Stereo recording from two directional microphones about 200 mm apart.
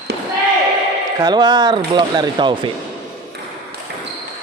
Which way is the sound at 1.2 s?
20° right (ahead or behind).